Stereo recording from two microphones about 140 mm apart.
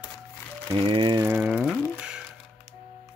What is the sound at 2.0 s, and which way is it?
Music, 5° right (ahead or behind).